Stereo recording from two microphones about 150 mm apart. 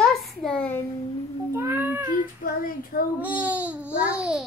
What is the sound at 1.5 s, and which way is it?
Speech, 15° right (ahead or behind).